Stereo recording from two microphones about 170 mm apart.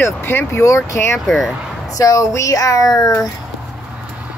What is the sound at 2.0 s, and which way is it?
Speech, 20° left (ahead or behind).